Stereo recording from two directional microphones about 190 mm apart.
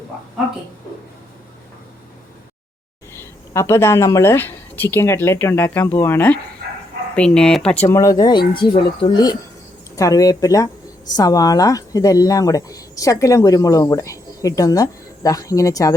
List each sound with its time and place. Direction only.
3.5 s speech: 15° left (ahead or behind)